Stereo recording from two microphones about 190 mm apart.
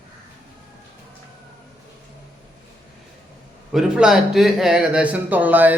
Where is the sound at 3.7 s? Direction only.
5° right (ahead or behind).